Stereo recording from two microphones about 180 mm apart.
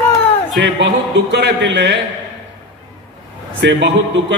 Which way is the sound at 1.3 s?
75° right (ahead or behind).